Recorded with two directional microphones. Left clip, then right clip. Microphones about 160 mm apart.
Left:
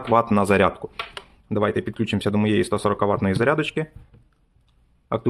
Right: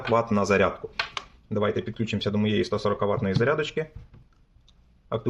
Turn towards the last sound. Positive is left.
turn(degrees=30)  # may be behind; listen again after turning